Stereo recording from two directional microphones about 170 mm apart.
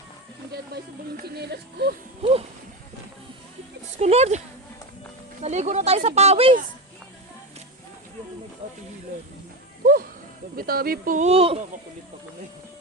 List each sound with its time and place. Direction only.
0.5 s speech: 70° right (ahead or behind)
2.2 s speech: 35° right (ahead or behind)
3.9 s speech: 40° right (ahead or behind)
8.6 s speech: 45° right (ahead or behind)
9.8 s a sound: 60° right (ahead or behind)
11.3 s speech: 35° right (ahead or behind)